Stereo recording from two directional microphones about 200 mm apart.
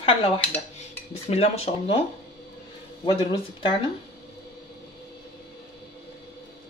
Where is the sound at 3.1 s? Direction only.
25° left (ahead or behind).